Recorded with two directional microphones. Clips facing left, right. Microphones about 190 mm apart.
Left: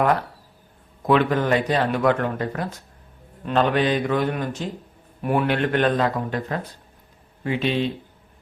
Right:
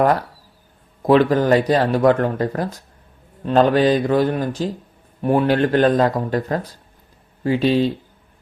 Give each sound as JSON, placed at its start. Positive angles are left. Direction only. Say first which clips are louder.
{"t": 0.0, "sound": "speech", "louder": "right 4 dB", "side_deg": -40}